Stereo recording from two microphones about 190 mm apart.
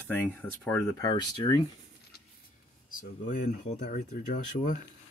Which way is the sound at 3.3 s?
40° left (ahead or behind).